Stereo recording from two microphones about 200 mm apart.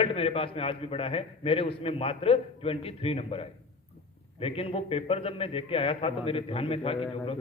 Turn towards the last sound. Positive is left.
turn(degrees=30)  # may be behind; listen again after turning